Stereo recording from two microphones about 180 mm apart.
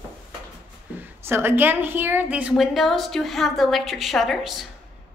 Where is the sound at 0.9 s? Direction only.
10° right (ahead or behind).